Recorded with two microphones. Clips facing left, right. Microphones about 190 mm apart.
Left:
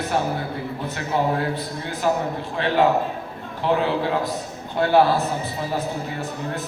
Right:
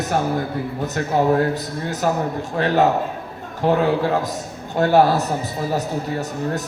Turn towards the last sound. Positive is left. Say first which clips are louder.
# right 2 dB
turn(degrees=-45)  # may be behind; listen again after turning